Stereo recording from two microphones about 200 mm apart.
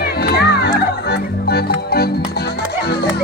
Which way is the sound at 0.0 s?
50° left (ahead or behind).